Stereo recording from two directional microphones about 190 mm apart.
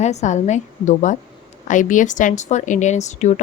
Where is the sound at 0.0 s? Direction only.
35° left (ahead or behind).